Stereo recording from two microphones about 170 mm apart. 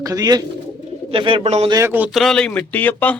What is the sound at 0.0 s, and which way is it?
Speech, 20° right (ahead or behind).